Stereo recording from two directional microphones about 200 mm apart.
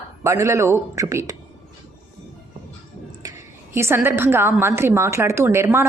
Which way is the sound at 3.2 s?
20° right (ahead or behind).